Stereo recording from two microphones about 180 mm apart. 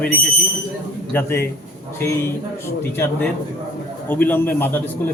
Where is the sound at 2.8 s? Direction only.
10° left (ahead or behind).